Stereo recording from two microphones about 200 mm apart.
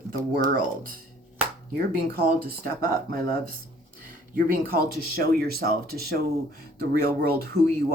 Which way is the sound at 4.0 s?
45° right (ahead or behind).